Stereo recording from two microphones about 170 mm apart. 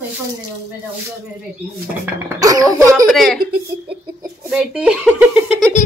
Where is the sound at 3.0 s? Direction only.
Centre (ahead or behind).